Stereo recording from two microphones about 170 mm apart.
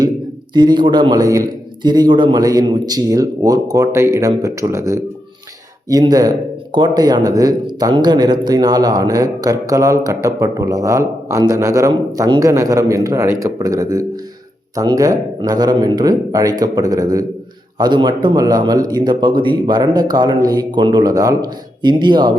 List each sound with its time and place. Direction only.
0.5 s speech: 25° right (ahead or behind)